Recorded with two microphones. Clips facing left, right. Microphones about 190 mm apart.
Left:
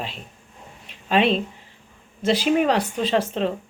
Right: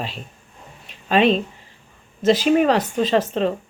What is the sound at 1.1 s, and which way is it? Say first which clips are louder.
Speech: right 3 dB; 45° right (ahead or behind).